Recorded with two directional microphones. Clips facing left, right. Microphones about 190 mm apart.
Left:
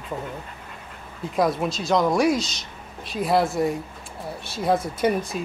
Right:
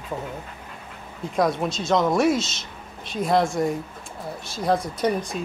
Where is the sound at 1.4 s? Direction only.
Centre (ahead or behind).